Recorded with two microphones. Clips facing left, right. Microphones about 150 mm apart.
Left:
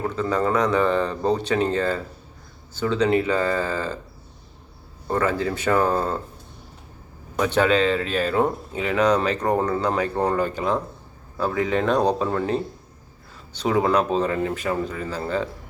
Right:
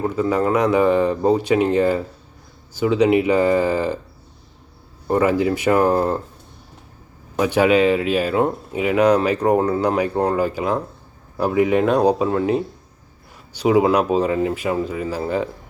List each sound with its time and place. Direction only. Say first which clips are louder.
0.0 s speech: right 4 dB; 10° right (ahead or behind)
5.0 s speech: right 5 dB; 10° right (ahead or behind)
7.3 s speech: right 4 dB; 10° right (ahead or behind)